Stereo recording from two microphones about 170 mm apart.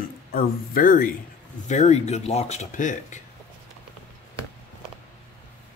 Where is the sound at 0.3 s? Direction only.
55° left (ahead or behind).